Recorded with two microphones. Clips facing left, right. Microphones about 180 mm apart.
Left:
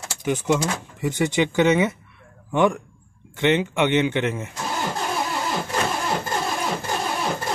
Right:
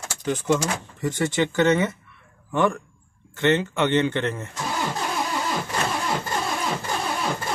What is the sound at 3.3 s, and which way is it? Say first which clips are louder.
Speech: left 1 dB; 15° left (ahead or behind).